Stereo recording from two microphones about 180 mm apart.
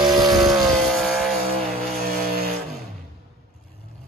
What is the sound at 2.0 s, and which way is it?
Vehicle, 55° right (ahead or behind).